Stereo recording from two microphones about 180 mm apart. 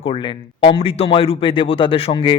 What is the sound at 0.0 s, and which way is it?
Speech, 30° left (ahead or behind).